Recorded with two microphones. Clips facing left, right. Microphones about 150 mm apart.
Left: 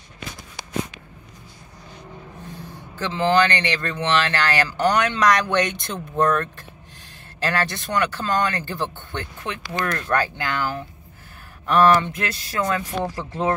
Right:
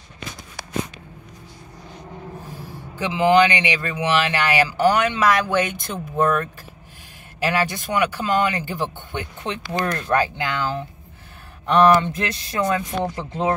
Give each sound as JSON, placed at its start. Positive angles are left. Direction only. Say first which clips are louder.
{"t": 3.0, "sound": "a man's voice", "louder": "right 3 dB", "side_deg": -10}
{"t": 9.4, "sound": "speech", "louder": "right 3 dB", "side_deg": -30}
{"t": 10.0, "sound": "a man's voice", "louder": "right 2 dB", "side_deg": -15}